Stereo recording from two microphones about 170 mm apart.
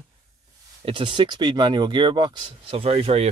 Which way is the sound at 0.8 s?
30° right (ahead or behind).